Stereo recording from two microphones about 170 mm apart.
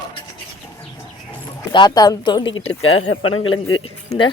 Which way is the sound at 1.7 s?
25° left (ahead or behind).